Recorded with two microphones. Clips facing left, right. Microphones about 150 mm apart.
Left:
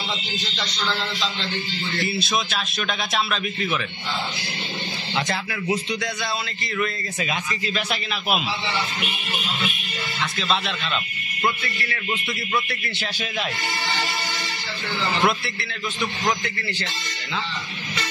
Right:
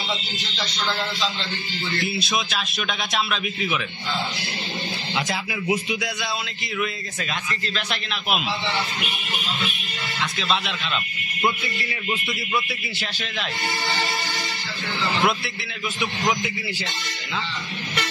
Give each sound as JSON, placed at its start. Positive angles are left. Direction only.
{"t": 2.0, "sound": "a man's voice", "side_deg": 0}
{"t": 5.1, "sound": "a man's voice", "side_deg": 0}
{"t": 5.5, "sound": "speech", "side_deg": -15}
{"t": 5.9, "sound": "a man's voice", "side_deg": 0}
{"t": 11.4, "sound": "speech", "side_deg": -15}
{"t": 12.6, "sound": "a man's voice", "side_deg": -5}
{"t": 15.2, "sound": "a man's voice", "side_deg": 0}